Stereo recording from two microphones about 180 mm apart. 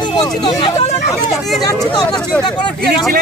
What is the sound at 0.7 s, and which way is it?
Hubbub, 40° left (ahead or behind).